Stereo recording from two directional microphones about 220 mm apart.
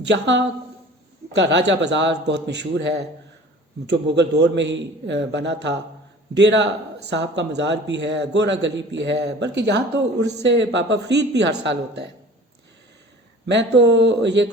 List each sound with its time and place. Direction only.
0.0 s a man's voice: 50° right (ahead or behind)
13.5 s a man's voice: 55° right (ahead or behind)